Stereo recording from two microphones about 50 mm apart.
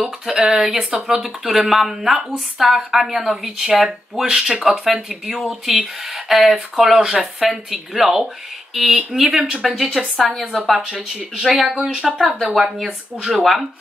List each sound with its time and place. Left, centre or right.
0.0 s speech: centre
11.5 s speech: centre